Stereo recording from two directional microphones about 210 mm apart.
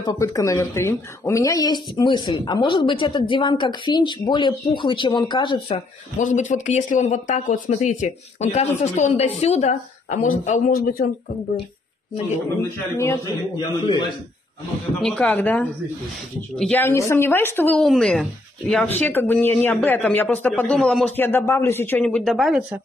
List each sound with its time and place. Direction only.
0.0 s speech: 15° left (ahead or behind)
6.1 s speech: 35° left (ahead or behind)
12.9 s speech: 15° left (ahead or behind)
15.0 s speech: 5° left (ahead or behind)